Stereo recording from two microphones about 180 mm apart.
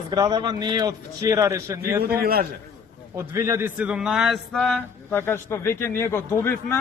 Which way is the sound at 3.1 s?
15° right (ahead or behind).